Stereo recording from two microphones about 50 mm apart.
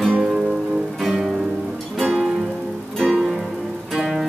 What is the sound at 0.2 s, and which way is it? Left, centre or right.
Music, centre.